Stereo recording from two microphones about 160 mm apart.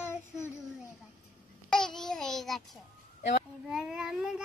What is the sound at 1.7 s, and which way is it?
Speech, 5° left (ahead or behind).